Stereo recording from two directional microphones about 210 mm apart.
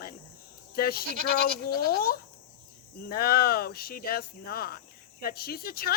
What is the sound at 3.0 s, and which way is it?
Speech, 45° left (ahead or behind).